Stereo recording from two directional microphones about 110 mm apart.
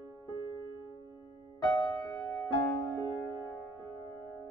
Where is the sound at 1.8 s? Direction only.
35° left (ahead or behind).